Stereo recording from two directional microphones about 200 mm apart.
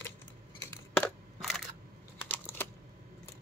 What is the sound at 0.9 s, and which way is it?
Crushing, centre (ahead or behind).